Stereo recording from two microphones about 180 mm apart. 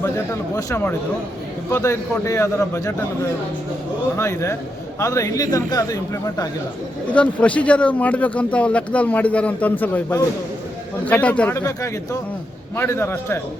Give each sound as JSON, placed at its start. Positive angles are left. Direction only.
{"t": 0.5, "sound": "speech", "side_deg": 15}
{"t": 4.2, "sound": "a man's voice", "side_deg": 15}
{"t": 7.1, "sound": "speech", "side_deg": 5}